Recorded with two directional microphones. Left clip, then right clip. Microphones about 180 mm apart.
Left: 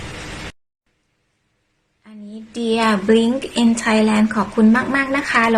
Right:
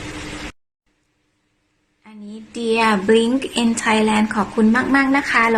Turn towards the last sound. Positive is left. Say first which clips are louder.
# right 1 dB
turn(degrees=-10)  # may be behind; listen again after turning